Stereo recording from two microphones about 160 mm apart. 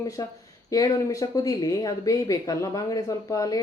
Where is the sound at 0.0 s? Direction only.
20° left (ahead or behind).